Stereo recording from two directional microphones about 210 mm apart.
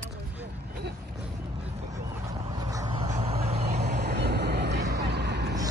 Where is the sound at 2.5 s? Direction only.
20° right (ahead or behind).